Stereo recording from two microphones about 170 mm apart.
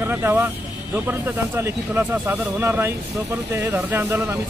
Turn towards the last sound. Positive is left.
turn(degrees=-15)  # may be behind; listen again after turning